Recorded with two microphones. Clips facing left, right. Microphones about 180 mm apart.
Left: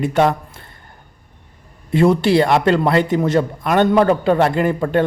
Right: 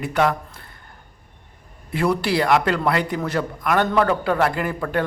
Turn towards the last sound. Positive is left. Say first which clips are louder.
# left 7 dB
turn(degrees=25)  # may be behind; listen again after turning